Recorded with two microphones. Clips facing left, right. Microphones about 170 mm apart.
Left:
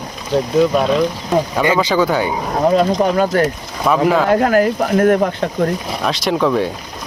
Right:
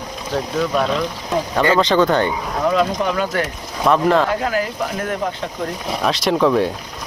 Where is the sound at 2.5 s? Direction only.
35° left (ahead or behind).